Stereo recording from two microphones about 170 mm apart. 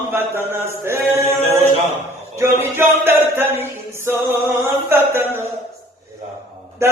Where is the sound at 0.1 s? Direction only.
15° right (ahead or behind).